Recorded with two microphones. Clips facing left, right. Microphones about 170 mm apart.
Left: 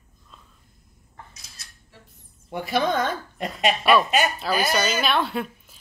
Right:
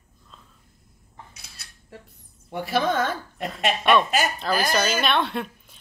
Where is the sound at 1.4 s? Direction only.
60° right (ahead or behind).